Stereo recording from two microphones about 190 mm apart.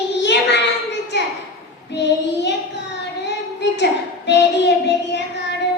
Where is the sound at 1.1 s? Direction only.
65° left (ahead or behind).